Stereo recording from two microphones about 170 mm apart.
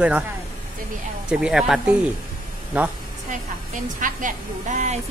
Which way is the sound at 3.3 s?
50° right (ahead or behind).